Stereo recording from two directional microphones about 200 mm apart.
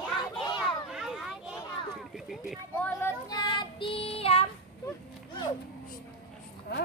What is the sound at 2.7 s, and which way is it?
Child singing, 10° left (ahead or behind).